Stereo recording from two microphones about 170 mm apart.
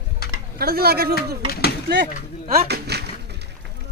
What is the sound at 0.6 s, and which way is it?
Speech, 65° right (ahead or behind).